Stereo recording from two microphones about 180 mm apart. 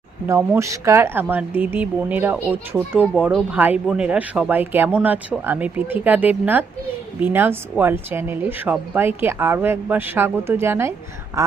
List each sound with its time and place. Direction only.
0.3 s speech: 15° right (ahead or behind)